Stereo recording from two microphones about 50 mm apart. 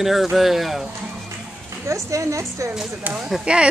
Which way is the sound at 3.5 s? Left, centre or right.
Right.